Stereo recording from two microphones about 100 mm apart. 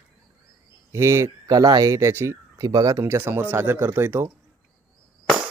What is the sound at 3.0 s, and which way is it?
Speech, 25° right (ahead or behind).